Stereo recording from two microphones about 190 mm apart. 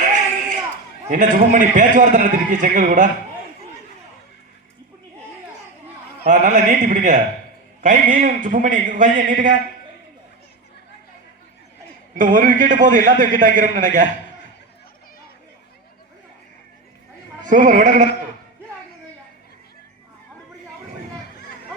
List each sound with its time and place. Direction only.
0.0 s a sound: 40° right (ahead or behind)
1.1 s a man's voice: 45° right (ahead or behind)
6.2 s a man's voice: 40° right (ahead or behind)
12.1 s a man's voice: 45° right (ahead or behind)
17.5 s a man's voice: 45° right (ahead or behind)